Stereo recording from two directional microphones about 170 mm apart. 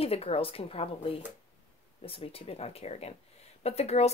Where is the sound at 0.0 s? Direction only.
35° left (ahead or behind).